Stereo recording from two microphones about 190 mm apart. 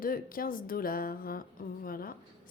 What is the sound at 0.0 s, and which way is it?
A woman's voice, 50° left (ahead or behind).